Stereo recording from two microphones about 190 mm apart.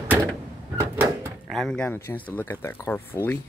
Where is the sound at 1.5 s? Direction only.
5° left (ahead or behind).